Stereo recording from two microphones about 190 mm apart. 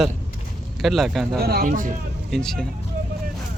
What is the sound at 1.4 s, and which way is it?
Speech, 45° right (ahead or behind).